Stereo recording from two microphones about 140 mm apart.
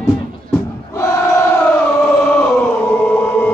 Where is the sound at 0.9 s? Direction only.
20° left (ahead or behind).